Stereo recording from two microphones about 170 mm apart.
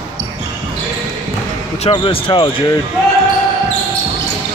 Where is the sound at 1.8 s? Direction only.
30° left (ahead or behind).